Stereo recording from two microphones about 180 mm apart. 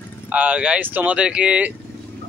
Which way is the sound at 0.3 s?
5° right (ahead or behind).